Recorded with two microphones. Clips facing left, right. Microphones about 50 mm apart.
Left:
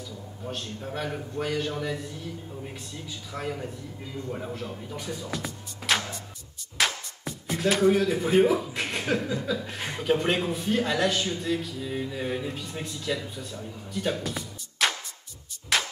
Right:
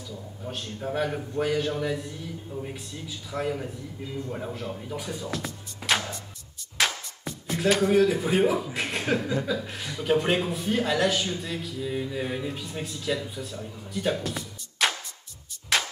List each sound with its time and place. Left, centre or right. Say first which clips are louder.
0.5 s a man's voice: right 3 dB; centre
6.8 s music: even; centre
8.7 s chuckle: right 1 dB; centre
9.5 s a man's voice: right 1 dB; centre
9.8 s speech: left 1 dB; left
10.0 s a man's voice: right 1 dB; centre
15.7 s music: even; centre